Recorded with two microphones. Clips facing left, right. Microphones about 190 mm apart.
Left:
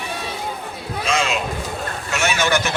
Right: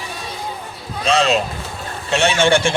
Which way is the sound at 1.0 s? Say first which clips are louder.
Right 6 dB; 35° right (ahead or behind).